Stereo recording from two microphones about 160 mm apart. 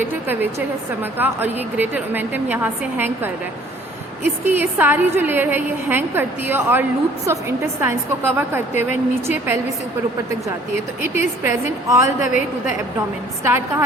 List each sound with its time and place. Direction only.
1.2 s a woman's voice: 10° right (ahead or behind)
11.0 s a woman's voice: 15° right (ahead or behind)
12.2 s a woman's voice: 55° left (ahead or behind)
13.4 s a woman's voice: 15° right (ahead or behind)